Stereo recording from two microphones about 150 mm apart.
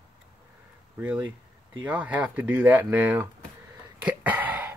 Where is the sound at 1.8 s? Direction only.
10° right (ahead or behind).